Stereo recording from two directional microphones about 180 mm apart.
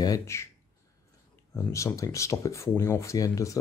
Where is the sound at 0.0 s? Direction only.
15° left (ahead or behind).